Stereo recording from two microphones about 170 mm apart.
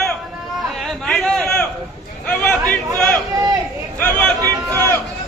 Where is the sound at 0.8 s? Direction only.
Centre (ahead or behind).